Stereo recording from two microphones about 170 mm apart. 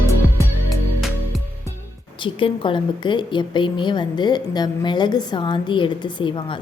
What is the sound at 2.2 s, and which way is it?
A woman's voice, 30° left (ahead or behind).